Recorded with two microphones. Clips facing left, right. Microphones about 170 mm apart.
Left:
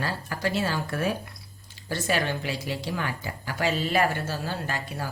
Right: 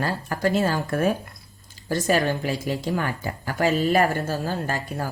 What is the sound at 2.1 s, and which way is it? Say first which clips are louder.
Speech: right 5 dB; 45° right (ahead or behind).